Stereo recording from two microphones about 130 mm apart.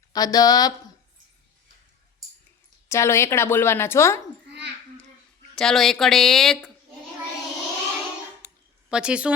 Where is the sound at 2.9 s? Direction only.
20° left (ahead or behind).